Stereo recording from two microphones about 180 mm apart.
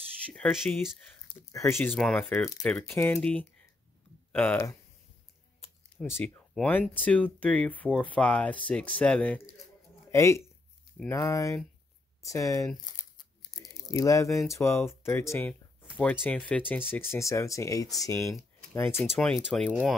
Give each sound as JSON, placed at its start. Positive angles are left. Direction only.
{"t": 0.3, "sound": "speech", "side_deg": 0}
{"t": 1.5, "sound": "speech", "side_deg": 15}
{"t": 6.1, "sound": "speech", "side_deg": 10}
{"t": 13.6, "sound": "a sound", "side_deg": 20}
{"t": 14.5, "sound": "speech", "side_deg": 15}
{"t": 18.2, "sound": "typing", "side_deg": 0}
{"t": 18.9, "sound": "speech", "side_deg": 0}